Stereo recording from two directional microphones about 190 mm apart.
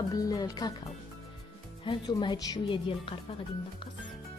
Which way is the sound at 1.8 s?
25° left (ahead or behind).